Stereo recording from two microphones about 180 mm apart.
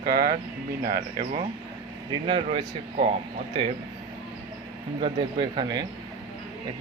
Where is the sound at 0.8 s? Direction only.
55° right (ahead or behind).